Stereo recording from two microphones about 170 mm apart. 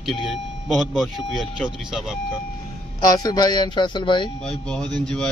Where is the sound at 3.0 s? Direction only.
20° left (ahead or behind).